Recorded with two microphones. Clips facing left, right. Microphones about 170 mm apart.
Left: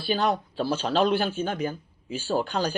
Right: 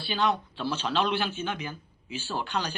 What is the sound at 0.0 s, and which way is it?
Speech, 45° left (ahead or behind).